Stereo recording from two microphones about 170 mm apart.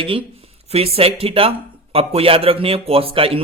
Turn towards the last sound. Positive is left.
turn(degrees=-35)  # may be behind; listen again after turning